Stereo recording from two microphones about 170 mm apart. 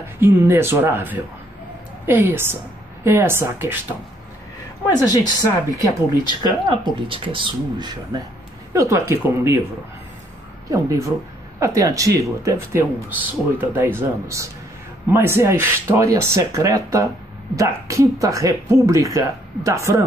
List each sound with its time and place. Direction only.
0.2 s speech: 15° right (ahead or behind)
5.2 s speech: 20° left (ahead or behind)
6.4 s a woman's voice: 30° right (ahead or behind)
10.7 s a woman's voice: 20° right (ahead or behind)